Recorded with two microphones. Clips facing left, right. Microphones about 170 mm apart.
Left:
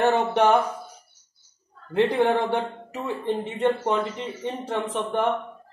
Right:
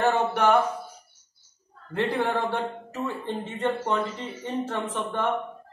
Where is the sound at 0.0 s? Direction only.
20° left (ahead or behind).